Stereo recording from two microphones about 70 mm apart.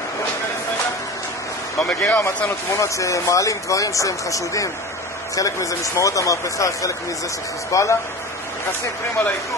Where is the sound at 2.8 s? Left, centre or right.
Left.